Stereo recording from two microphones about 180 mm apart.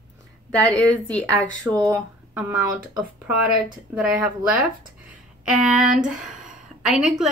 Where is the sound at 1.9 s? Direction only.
10° right (ahead or behind).